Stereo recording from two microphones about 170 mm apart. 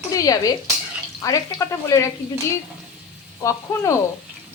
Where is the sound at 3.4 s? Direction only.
20° left (ahead or behind).